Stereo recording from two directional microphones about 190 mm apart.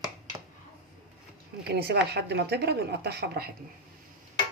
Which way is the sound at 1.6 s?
60° right (ahead or behind).